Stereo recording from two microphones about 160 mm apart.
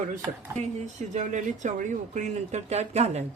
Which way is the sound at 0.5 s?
45° right (ahead or behind).